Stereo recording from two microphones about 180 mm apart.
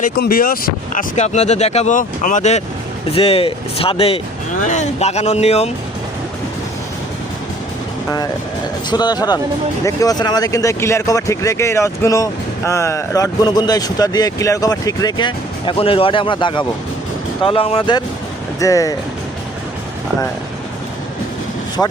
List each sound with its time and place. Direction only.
0.0 s speech: 55° left (ahead or behind); by 5.7 s 35° left (ahead or behind)
8.9 s speech: 25° left (ahead or behind)
21.8 s speech: 10° left (ahead or behind)